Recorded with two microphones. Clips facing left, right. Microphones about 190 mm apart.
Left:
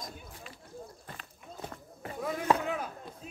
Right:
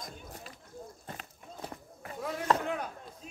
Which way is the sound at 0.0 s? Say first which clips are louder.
Even; 40° right (ahead or behind).